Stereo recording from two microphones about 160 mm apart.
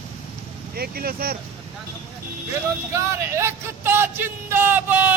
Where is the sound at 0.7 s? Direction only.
70° right (ahead or behind).